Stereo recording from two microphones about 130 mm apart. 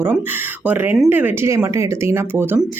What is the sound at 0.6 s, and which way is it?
Speech, 15° right (ahead or behind).